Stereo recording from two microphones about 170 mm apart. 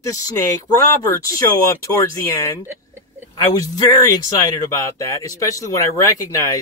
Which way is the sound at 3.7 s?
20° left (ahead or behind).